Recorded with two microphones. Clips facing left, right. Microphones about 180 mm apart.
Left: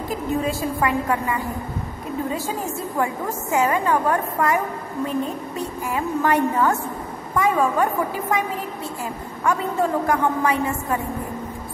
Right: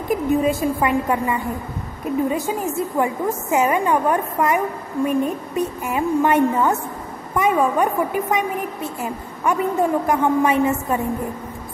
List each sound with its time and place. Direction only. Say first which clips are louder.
0.1 s a woman's voice: right 6 dB; 20° right (ahead or behind)